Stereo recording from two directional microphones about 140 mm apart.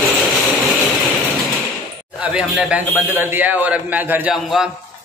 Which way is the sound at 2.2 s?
10° right (ahead or behind).